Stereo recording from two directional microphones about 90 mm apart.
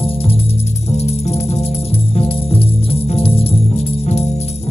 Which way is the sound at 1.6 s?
90° left.